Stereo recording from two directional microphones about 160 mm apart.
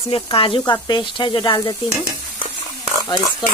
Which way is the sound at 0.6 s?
25° left (ahead or behind).